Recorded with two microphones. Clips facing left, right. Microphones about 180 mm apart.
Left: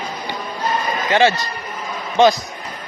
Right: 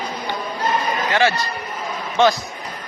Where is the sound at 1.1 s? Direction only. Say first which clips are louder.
Left 5 dB; 25° left (ahead or behind).